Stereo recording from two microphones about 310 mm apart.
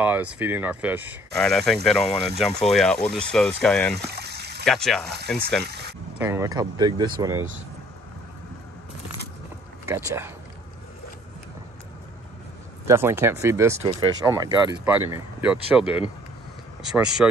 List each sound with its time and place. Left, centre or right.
0.0 s speech: centre
4.1 s a sound: right
4.6 s speech: centre
5.6 s speech: right
6.1 s speech: centre
9.8 s speech: centre
12.8 s speech: centre
16.9 s speech: centre